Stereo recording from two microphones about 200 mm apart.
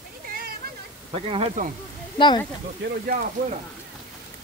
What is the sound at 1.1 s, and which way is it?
Speech, 30° right (ahead or behind).